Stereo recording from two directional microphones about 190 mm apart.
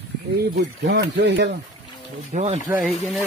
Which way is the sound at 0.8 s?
70° right (ahead or behind).